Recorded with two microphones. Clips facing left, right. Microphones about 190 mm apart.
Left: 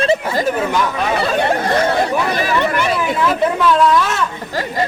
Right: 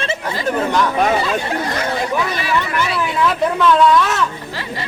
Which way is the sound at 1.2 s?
65° left (ahead or behind).